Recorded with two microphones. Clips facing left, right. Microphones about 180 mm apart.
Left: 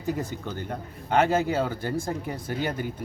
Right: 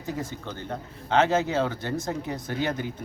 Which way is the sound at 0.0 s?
15° left (ahead or behind).